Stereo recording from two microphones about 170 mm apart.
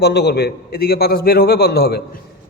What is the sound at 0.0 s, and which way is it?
A man's voice, 80° left.